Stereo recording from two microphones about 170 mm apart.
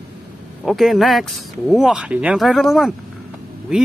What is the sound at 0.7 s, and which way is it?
Speech, centre (ahead or behind).